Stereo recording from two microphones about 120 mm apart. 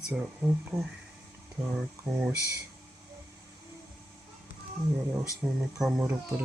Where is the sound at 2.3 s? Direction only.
25° right (ahead or behind).